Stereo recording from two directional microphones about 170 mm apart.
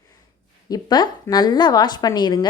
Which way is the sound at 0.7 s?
25° left (ahead or behind).